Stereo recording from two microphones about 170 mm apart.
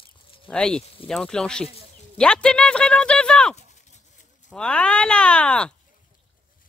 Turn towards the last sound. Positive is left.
turn(degrees=5)  # may be behind; listen again after turning